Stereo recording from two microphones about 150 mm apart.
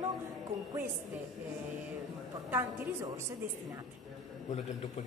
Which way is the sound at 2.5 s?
15° right (ahead or behind).